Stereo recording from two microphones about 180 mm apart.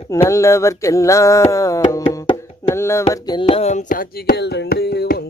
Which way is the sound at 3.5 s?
35° left (ahead or behind).